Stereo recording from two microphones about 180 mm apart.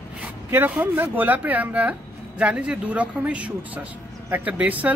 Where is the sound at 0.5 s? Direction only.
10° right (ahead or behind).